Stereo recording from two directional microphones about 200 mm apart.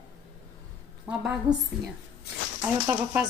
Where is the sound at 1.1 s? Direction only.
5° right (ahead or behind).